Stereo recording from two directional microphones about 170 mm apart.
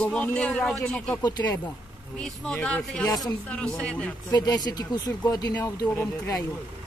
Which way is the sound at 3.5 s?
5° left (ahead or behind).